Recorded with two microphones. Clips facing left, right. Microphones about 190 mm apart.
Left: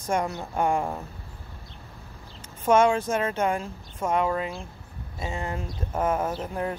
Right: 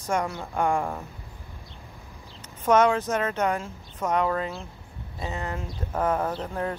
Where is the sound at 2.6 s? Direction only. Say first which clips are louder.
Even; 25° left (ahead or behind).